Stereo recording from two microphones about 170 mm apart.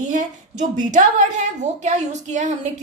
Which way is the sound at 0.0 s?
50° right (ahead or behind).